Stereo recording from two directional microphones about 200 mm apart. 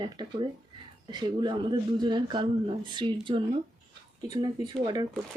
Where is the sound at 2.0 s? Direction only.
25° right (ahead or behind).